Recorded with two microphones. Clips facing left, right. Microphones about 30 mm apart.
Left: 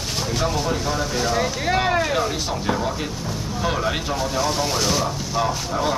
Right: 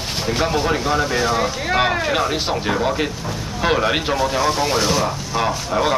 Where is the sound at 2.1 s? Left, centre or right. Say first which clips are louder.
Right 3 dB; right; by 5.0 s centre.